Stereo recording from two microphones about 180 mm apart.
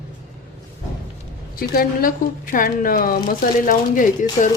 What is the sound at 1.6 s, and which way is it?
A woman's voice, 50° left (ahead or behind).